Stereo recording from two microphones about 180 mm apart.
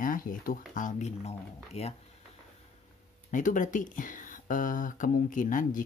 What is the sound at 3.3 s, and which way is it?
Speech, 45° left (ahead or behind).